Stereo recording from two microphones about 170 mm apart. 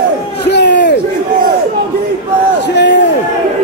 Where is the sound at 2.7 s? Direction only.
90° left.